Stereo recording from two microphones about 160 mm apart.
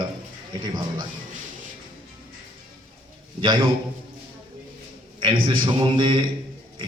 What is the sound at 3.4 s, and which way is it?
Speech, 30° right (ahead or behind).